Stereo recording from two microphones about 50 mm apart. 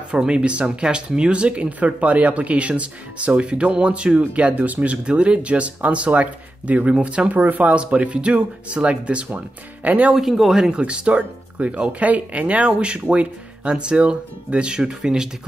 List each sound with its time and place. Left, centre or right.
0.1 s speech: centre
10.1 s speech: centre
10.8 s speech: right